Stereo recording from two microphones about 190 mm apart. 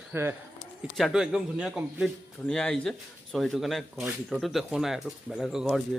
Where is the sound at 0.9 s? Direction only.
Centre (ahead or behind).